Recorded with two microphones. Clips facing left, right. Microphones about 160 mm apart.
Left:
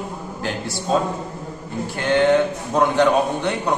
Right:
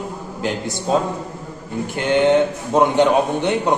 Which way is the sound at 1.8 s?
20° right (ahead or behind).